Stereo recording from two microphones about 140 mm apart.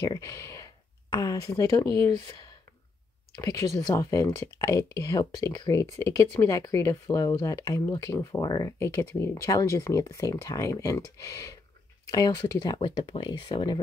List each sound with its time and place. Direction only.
0.0 s speech: 25° left (ahead or behind)
3.3 s speech: 25° left (ahead or behind)